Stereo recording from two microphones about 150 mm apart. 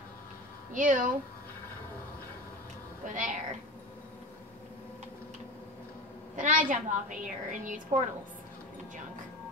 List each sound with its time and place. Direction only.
0.7 s a woman's voice: 60° right (ahead or behind)
3.1 s a woman's voice: 60° right (ahead or behind)
6.3 s a woman's voice: 60° right (ahead or behind)